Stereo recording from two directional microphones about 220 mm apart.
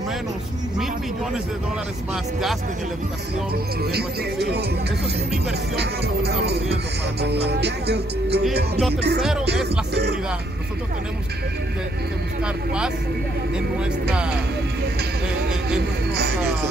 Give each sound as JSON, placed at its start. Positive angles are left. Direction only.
{"t": 3.9, "sound": "music", "side_deg": -50}
{"t": 5.8, "sound": "music", "side_deg": -50}